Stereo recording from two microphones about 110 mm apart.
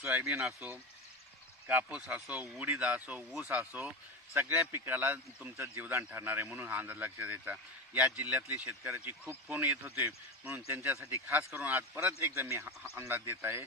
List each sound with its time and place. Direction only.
0.0 s speech: 25° right (ahead or behind)
0.3 s speech: 10° right (ahead or behind)
12.1 s speech: 25° right (ahead or behind)